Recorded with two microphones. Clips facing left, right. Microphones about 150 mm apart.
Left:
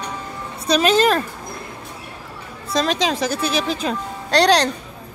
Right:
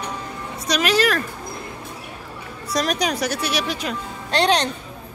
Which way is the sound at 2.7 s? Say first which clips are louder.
Left 2 dB; 25° left (ahead or behind).